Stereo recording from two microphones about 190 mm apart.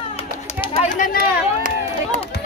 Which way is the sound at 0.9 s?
50° left (ahead or behind).